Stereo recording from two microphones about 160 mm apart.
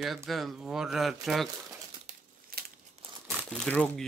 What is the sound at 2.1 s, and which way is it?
Crumpling, 50° right (ahead or behind).